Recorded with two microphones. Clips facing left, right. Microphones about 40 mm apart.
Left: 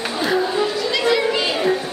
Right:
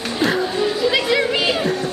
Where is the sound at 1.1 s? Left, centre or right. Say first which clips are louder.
Right 1 dB; centre.